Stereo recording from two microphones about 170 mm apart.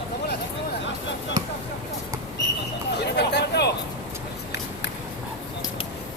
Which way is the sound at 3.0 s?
80° left.